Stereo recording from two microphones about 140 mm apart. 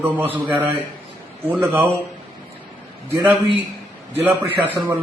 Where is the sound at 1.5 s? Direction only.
15° right (ahead or behind).